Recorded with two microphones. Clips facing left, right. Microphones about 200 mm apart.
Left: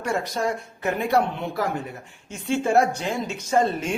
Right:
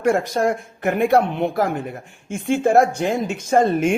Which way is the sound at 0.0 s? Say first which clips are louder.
Right 7 dB; 50° right (ahead or behind).